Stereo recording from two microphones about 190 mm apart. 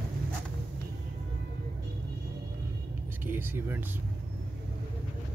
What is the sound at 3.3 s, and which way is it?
Speech, 10° right (ahead or behind).